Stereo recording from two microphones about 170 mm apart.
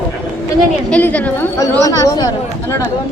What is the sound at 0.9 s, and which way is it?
A woman's voice, 10° left (ahead or behind).